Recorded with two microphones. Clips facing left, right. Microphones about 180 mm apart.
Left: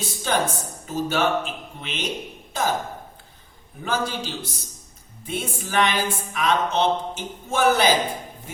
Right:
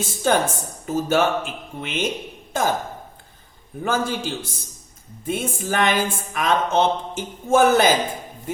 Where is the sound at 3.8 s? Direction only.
50° right (ahead or behind).